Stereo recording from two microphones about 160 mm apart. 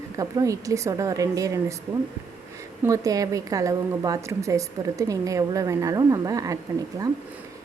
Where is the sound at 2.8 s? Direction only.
20° right (ahead or behind).